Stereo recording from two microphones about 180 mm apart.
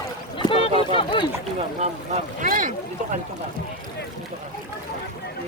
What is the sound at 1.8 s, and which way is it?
Speech, 40° right (ahead or behind).